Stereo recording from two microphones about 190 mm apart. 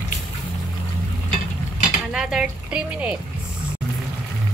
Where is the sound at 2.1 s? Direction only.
Centre (ahead or behind).